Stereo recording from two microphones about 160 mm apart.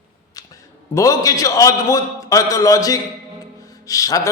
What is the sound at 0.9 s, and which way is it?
A man's voice, 20° left (ahead or behind).